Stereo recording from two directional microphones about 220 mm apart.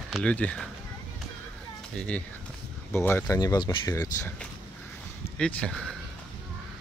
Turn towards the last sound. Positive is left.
turn(degrees=5)  # may be behind; listen again after turning